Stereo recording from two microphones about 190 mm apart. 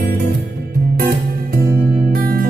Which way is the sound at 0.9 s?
55° right (ahead or behind).